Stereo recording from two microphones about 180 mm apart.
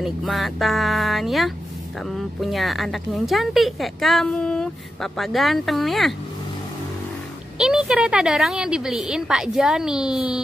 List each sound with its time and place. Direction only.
0.0 s a woman's voice: centre (ahead or behind)
7.5 s a woman's voice: 5° right (ahead or behind)